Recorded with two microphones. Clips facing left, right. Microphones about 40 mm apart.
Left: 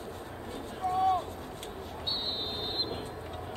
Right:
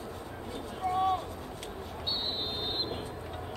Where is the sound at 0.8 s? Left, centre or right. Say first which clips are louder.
Left 1 dB; right.